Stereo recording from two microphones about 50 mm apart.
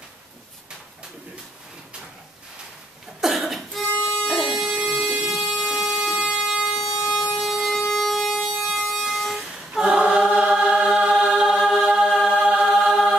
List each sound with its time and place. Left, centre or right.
3.2 s cough: centre
4.5 s dog: centre
4.7 s a sound: right
5.3 s a sound: centre
7.9 s vehicle: centre
9.8 s choir: centre